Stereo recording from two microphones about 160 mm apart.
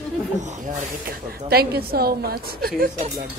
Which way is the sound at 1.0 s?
75° right (ahead or behind).